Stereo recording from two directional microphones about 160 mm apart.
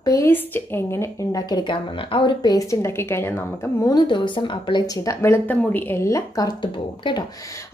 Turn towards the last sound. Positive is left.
turn(degrees=30)  # may be behind; listen again after turning